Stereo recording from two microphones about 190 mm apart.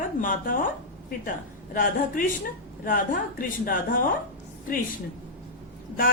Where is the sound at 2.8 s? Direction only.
45° left (ahead or behind).